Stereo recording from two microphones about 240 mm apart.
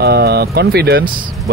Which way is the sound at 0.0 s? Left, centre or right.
Right.